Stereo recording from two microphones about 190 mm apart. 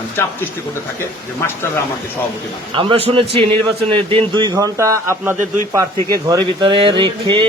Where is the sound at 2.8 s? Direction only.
30° right (ahead or behind).